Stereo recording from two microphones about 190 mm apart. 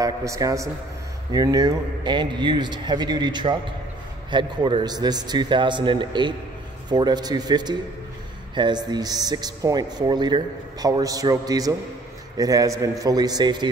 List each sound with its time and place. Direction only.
0.0 s a man's voice: 15° right (ahead or behind)